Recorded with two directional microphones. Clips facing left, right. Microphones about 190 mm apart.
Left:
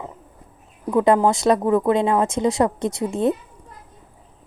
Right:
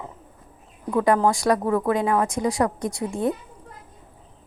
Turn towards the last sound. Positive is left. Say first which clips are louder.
# left 4 dB
turn(degrees=20)  # may be behind; listen again after turning